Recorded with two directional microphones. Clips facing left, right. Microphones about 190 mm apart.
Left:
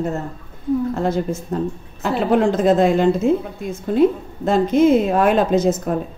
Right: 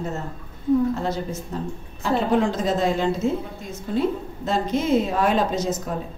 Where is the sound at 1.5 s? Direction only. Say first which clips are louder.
Left 7 dB; 50° left (ahead or behind).